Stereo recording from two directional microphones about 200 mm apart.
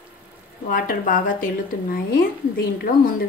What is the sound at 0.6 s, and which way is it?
A woman's voice, 45° left (ahead or behind).